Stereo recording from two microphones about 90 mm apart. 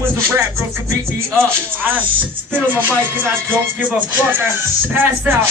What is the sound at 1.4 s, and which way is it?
Speech, 25° right (ahead or behind).